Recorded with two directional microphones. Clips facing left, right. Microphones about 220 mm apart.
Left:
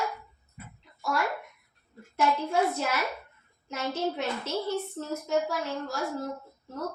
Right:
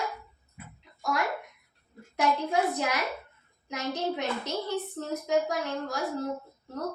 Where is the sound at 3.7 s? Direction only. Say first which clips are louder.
Even; 15° right (ahead or behind).